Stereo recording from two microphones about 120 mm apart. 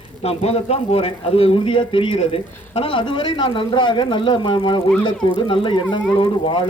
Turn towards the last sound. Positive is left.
turn(degrees=45)  # may be behind; listen again after turning